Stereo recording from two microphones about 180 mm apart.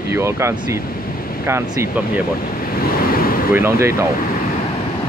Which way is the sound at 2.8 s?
55° left (ahead or behind).